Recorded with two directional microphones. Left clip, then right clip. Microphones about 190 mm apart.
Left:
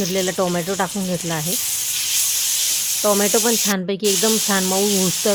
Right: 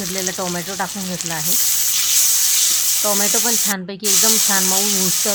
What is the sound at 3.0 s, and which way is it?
Sizzle, 30° left (ahead or behind).